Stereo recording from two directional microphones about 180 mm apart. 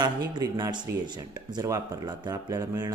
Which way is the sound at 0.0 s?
25° right (ahead or behind).